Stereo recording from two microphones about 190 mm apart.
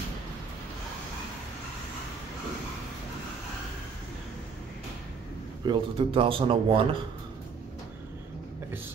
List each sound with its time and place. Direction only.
5.7 s speech: 30° right (ahead or behind)